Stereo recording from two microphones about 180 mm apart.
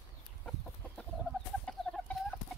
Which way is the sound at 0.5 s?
5° left (ahead or behind).